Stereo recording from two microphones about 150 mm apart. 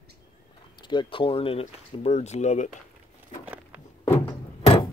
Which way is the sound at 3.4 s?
10° right (ahead or behind).